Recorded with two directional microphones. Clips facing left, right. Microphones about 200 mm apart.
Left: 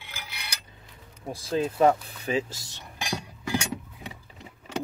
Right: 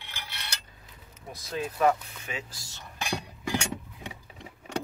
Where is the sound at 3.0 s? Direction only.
Centre (ahead or behind).